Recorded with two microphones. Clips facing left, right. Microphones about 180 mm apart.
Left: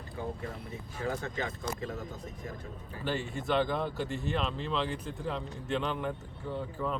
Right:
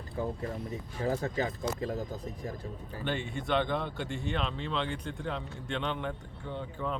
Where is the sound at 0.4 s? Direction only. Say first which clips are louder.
Right 4 dB; 35° right (ahead or behind).